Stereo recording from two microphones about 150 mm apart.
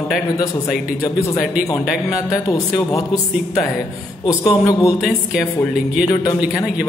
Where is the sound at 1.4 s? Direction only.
5° right (ahead or behind).